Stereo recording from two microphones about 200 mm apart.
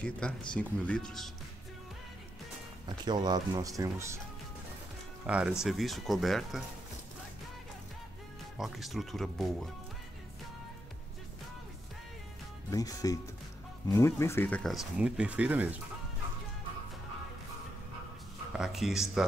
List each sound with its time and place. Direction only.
0.2 s speech: 5° left (ahead or behind)
3.1 s speech: 20° right (ahead or behind)
5.2 s speech: 5° right (ahead or behind)
8.5 s speech: centre (ahead or behind)
12.7 s speech: 15° left (ahead or behind); by 15.7 s 5° right (ahead or behind)
18.5 s speech: centre (ahead or behind)